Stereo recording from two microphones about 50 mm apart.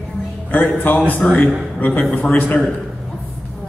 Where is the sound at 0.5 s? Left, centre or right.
Left.